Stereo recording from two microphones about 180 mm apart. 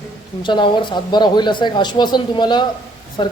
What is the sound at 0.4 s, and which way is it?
Speech, 25° left (ahead or behind).